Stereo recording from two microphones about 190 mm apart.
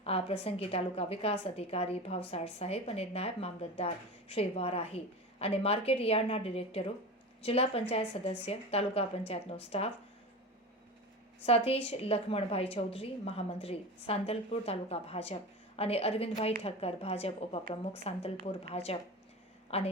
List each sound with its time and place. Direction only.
0.0 s a woman's voice: 30° left (ahead or behind)
11.4 s a woman's voice: 30° left (ahead or behind)